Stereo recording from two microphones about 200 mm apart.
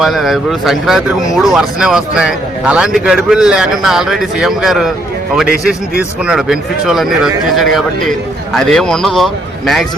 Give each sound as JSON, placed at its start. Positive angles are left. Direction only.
{"t": 0.0, "sound": "speech", "side_deg": 0}